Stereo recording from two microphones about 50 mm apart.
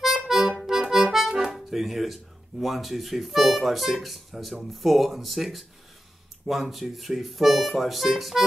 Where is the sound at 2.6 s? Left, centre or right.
Centre.